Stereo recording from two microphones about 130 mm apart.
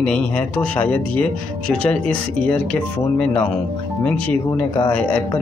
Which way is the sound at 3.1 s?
10° left (ahead or behind).